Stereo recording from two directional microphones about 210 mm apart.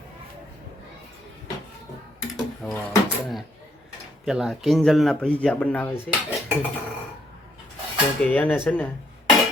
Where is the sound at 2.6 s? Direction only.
5° left (ahead or behind).